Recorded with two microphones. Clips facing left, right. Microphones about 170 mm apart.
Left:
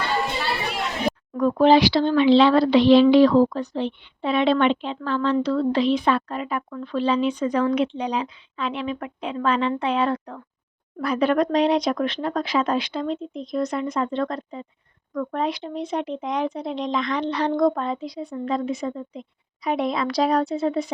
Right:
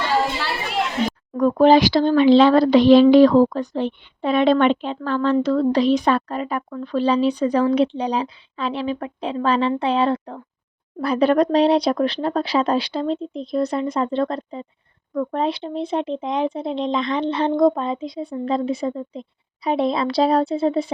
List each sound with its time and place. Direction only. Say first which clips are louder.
1.4 s speech: right 3 dB; 45° right (ahead or behind)